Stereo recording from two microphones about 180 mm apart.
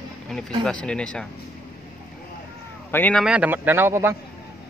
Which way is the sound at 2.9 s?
10° left (ahead or behind).